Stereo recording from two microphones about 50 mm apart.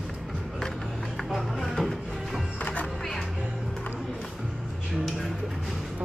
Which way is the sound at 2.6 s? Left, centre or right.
Left.